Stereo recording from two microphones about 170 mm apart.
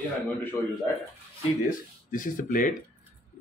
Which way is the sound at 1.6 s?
50° left (ahead or behind).